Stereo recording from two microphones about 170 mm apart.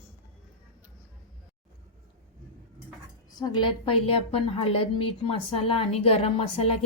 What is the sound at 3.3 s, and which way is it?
A woman's voice, 25° left (ahead or behind).